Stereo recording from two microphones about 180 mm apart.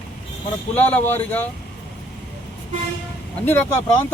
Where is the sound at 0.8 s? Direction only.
10° left (ahead or behind).